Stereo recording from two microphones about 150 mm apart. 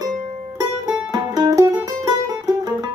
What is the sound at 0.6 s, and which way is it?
Music, 25° right (ahead or behind).